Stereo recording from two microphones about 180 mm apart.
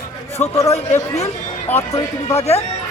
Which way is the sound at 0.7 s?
35° left (ahead or behind).